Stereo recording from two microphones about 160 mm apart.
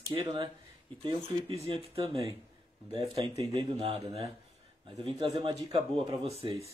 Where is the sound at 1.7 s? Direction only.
35° right (ahead or behind).